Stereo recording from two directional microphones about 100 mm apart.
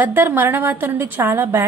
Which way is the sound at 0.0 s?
20° right (ahead or behind).